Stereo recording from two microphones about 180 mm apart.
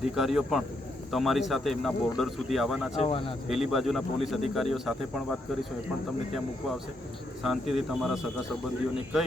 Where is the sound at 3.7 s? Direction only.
Centre (ahead or behind).